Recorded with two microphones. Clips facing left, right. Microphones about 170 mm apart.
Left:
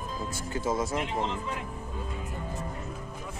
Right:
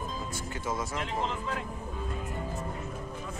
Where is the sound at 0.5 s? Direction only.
25° left (ahead or behind).